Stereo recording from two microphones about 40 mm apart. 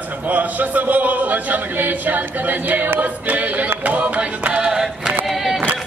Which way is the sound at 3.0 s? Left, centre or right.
Right.